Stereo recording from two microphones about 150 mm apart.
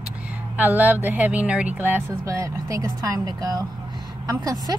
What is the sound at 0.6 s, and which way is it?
A woman's voice, 10° right (ahead or behind).